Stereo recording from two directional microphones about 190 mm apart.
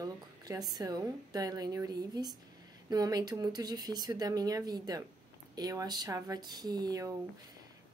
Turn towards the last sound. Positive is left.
turn(degrees=-20)  # may be behind; listen again after turning